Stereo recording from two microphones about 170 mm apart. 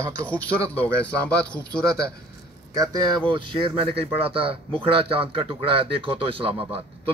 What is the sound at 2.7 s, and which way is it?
Speech, 20° right (ahead or behind).